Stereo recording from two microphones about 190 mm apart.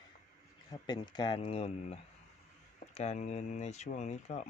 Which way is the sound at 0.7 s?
20° left (ahead or behind).